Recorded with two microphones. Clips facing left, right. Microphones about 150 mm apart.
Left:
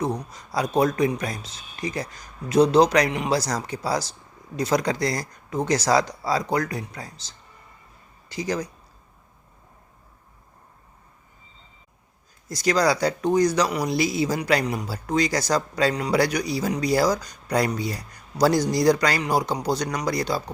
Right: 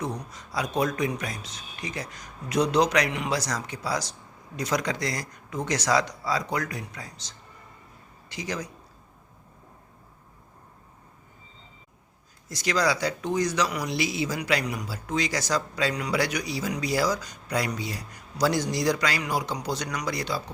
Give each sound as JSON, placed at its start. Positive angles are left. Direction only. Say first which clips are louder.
{"t": 0.0, "sound": "speech", "louder": "left 6 dB", "side_deg": 30}
{"t": 12.5, "sound": "speech", "louder": "left 4 dB", "side_deg": 35}